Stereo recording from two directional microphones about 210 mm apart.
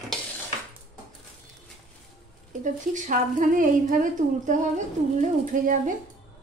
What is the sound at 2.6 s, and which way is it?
Speech, 40° right (ahead or behind).